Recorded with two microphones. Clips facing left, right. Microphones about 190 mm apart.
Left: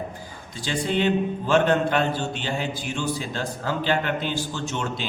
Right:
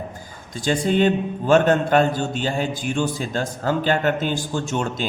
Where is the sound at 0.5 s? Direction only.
45° right (ahead or behind).